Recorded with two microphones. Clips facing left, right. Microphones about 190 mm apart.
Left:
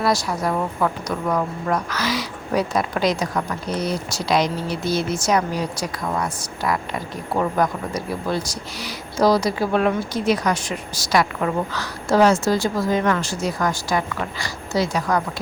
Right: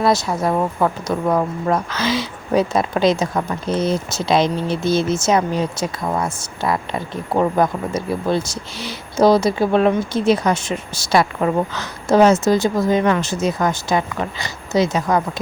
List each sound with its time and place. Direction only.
0.0 s speech: 25° right (ahead or behind)